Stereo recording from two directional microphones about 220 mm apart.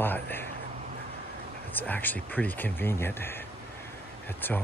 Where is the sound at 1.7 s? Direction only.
10° left (ahead or behind).